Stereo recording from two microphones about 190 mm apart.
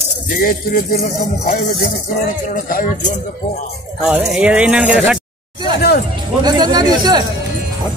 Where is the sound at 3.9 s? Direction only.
5° right (ahead or behind).